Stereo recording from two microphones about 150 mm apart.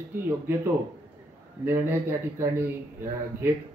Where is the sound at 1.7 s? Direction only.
15° right (ahead or behind).